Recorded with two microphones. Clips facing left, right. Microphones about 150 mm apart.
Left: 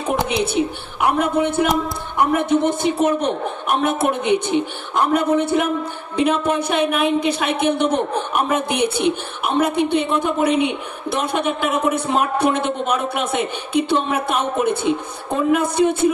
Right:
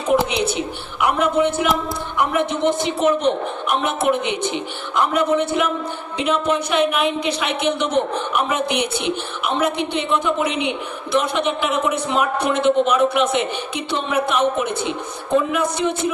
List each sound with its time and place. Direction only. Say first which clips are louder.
0.1 s speech: right 3 dB; centre (ahead or behind)
0.4 s speech: left 3 dB; 55° left (ahead or behind)